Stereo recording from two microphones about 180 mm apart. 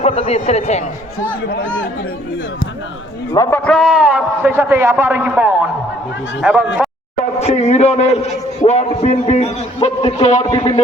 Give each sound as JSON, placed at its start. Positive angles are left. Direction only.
{"t": 0.0, "sound": "a man's voice", "side_deg": 35}
{"t": 1.2, "sound": "speech", "side_deg": 60}
{"t": 3.3, "sound": "a man's voice", "side_deg": 20}
{"t": 3.6, "sound": "a man's voice", "side_deg": 0}
{"t": 7.3, "sound": "a man's voice", "side_deg": 35}